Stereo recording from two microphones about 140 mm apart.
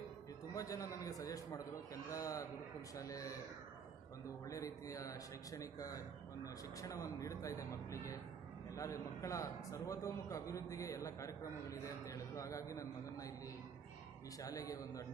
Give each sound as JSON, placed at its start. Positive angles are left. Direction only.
{"t": 0.5, "sound": "a man's voice", "side_deg": 25}
{"t": 4.5, "sound": "a man's voice", "side_deg": 25}
{"t": 14.4, "sound": "a man's voice", "side_deg": 25}